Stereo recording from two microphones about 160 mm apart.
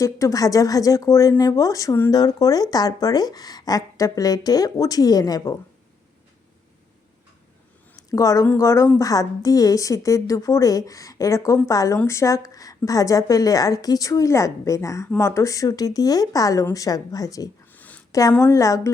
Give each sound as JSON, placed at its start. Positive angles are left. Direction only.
{"t": 0.0, "sound": "speech", "side_deg": 20}
{"t": 7.9, "sound": "speech", "side_deg": 20}
{"t": 17.7, "sound": "a sound", "side_deg": 10}
{"t": 18.1, "sound": "a woman's voice", "side_deg": 20}